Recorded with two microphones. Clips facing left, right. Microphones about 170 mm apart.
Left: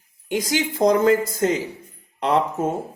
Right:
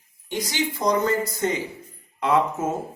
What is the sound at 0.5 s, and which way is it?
Speech, 90° left.